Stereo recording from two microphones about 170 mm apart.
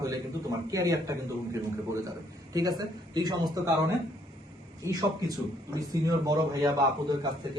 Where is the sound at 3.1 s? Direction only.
25° right (ahead or behind).